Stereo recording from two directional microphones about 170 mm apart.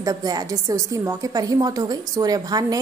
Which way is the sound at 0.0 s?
20° right (ahead or behind).